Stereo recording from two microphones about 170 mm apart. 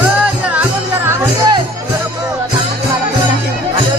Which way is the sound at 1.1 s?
20° right (ahead or behind).